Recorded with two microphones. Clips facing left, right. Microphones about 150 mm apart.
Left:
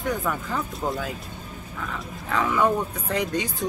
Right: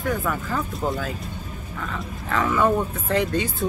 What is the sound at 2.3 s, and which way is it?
Speech, 10° left (ahead or behind).